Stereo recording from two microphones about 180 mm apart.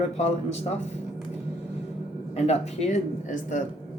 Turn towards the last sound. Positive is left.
turn(degrees=40)  # may be behind; listen again after turning